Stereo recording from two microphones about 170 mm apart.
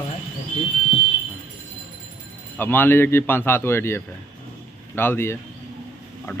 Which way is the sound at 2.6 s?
10° left (ahead or behind).